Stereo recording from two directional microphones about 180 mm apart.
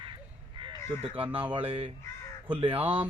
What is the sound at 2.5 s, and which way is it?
Speech, 30° right (ahead or behind).